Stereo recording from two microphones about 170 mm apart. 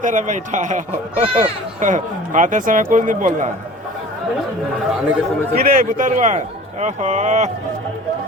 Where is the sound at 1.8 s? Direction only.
50° right (ahead or behind).